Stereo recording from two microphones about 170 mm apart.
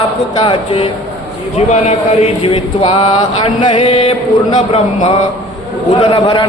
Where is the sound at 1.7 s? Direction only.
40° left (ahead or behind).